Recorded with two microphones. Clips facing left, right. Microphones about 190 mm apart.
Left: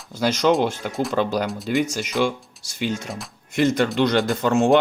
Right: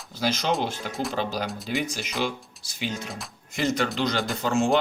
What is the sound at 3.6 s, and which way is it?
Speech, 55° left (ahead or behind).